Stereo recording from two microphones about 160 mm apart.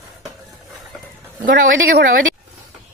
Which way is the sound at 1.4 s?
60° right (ahead or behind).